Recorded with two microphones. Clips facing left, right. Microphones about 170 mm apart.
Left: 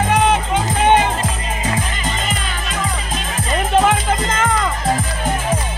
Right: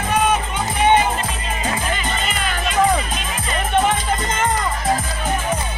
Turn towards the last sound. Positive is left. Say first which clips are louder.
# left 2 dB
turn(degrees=90)